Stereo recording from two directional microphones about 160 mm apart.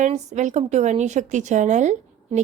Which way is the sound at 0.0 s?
50° right (ahead or behind).